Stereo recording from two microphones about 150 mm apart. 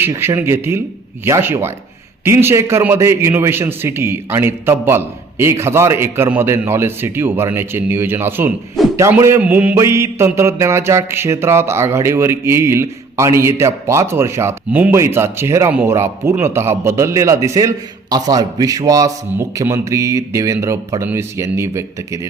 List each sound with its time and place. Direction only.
0.0 s a man's voice: 15° right (ahead or behind)